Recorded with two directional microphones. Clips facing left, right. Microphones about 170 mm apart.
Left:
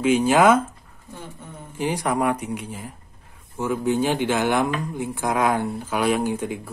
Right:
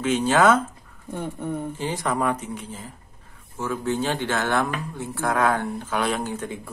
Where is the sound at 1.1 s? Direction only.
60° right (ahead or behind).